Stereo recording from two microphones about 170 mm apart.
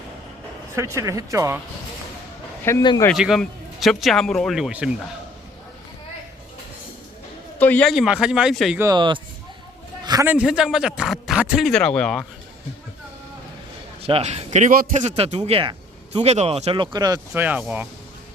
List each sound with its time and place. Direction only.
0.8 s speech: 15° right (ahead or behind)
2.7 s a man's voice: 15° left (ahead or behind)
3.1 s speech: centre (ahead or behind)
7.6 s speech: 10° left (ahead or behind)
8.8 s speech: 25° right (ahead or behind)
10.2 s speech: 5° right (ahead or behind)
14.0 s speech: 35° right (ahead or behind)
17.3 s speech: 10° right (ahead or behind)